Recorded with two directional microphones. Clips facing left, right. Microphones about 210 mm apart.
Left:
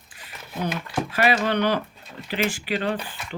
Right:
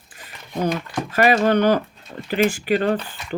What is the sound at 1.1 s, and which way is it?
Speech, 45° right (ahead or behind).